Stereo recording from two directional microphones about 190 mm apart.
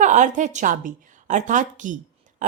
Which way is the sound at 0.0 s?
40° right (ahead or behind).